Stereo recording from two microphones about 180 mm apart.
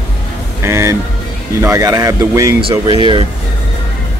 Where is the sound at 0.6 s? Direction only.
15° right (ahead or behind).